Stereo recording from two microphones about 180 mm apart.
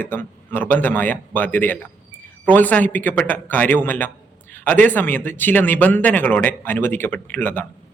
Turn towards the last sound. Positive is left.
turn(degrees=10)  # may be behind; listen again after turning